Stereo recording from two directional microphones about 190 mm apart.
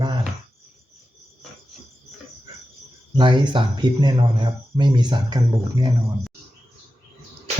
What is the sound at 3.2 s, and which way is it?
Speech, 25° right (ahead or behind).